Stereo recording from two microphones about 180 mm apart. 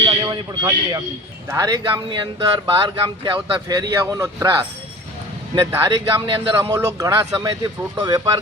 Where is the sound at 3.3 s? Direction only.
20° right (ahead or behind).